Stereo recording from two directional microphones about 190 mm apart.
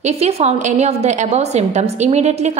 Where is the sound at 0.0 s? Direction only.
35° right (ahead or behind).